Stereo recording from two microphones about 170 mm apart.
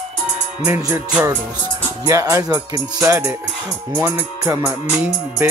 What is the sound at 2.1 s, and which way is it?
Speech, 20° right (ahead or behind).